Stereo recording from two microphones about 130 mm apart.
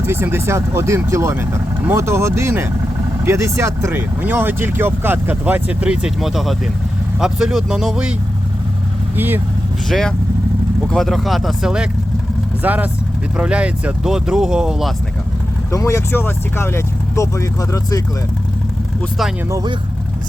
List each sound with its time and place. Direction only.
0.0 s speech: 20° right (ahead or behind)
9.1 s speech: 15° right (ahead or behind)
9.9 s speech: 5° left (ahead or behind)
15.7 s speech: 20° left (ahead or behind)
19.5 s speech: 30° right (ahead or behind)